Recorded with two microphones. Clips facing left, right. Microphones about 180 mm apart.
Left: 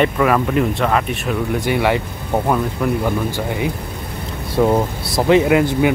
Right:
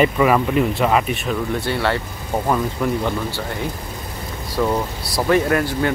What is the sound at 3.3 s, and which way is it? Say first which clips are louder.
Speech: left 4 dB; 15° left (ahead or behind).